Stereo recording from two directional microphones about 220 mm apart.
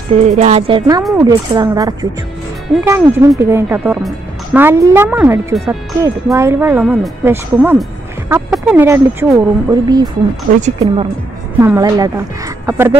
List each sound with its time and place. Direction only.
0.1 s a woman's voice: 30° right (ahead or behind); by 10.0 s 15° right (ahead or behind)
10.6 s a woman's voice: 30° right (ahead or behind)
11.6 s speech: 15° right (ahead or behind)